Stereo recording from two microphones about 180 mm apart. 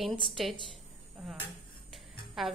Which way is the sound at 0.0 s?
Centre (ahead or behind).